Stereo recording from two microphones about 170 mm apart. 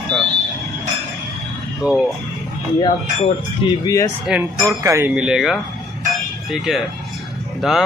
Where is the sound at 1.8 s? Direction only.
5° right (ahead or behind).